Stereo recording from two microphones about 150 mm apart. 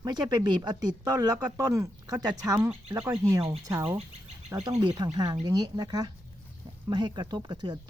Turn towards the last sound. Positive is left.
turn(degrees=-30)  # may be behind; listen again after turning